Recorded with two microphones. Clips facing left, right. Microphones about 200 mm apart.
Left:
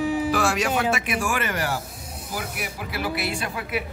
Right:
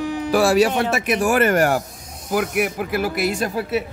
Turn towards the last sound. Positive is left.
turn(degrees=-45)  # may be behind; listen again after turning